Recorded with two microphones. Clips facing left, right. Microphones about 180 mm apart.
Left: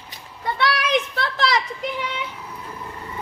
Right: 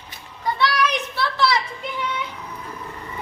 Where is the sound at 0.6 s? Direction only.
55° left (ahead or behind).